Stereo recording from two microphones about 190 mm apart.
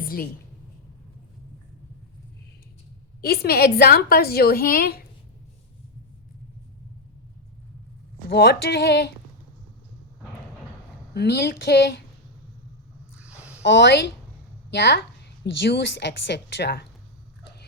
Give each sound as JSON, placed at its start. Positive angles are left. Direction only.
{"t": 0.0, "sound": "a sound", "side_deg": 50}
{"t": 3.2, "sound": "a woman's voice", "side_deg": 55}
{"t": 8.3, "sound": "a woman's voice", "side_deg": 60}
{"t": 11.1, "sound": "a woman's voice", "side_deg": 60}
{"t": 13.1, "sound": "a sound", "side_deg": -5}
{"t": 13.7, "sound": "a woman's voice", "side_deg": 65}